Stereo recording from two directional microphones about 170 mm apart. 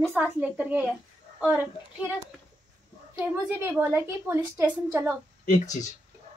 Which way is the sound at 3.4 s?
15° right (ahead or behind).